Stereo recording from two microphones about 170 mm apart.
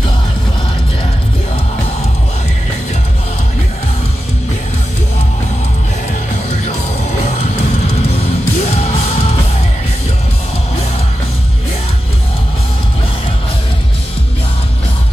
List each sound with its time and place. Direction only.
7.5 s music: 35° left (ahead or behind)